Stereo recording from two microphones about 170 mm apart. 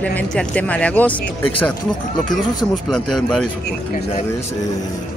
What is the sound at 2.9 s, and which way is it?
Speech, 5° left (ahead or behind).